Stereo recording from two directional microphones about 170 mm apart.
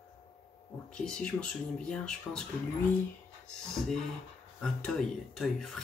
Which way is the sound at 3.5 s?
Centre (ahead or behind).